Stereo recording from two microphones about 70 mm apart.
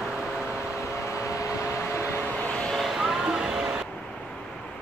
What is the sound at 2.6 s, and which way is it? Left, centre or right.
Vehicle, centre.